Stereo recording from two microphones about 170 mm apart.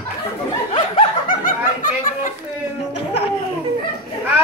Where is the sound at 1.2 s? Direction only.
55° left (ahead or behind).